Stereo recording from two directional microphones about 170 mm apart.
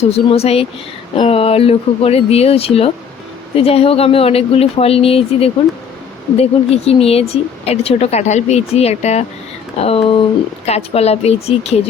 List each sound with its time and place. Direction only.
0.0 s speech: 35° left (ahead or behind)